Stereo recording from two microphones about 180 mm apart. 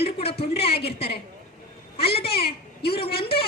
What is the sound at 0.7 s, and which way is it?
Speech, 65° left (ahead or behind).